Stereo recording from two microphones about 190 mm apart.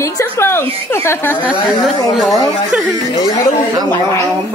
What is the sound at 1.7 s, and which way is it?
Speech, centre (ahead or behind).